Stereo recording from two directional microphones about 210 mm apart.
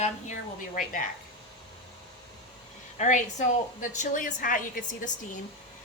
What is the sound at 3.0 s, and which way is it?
A woman's voice, 35° left (ahead or behind).